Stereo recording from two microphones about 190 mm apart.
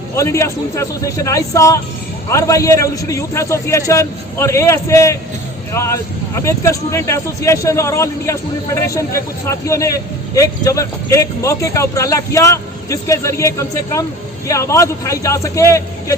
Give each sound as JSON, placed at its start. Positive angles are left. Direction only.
{"t": 0.2, "sound": "speech", "side_deg": 15}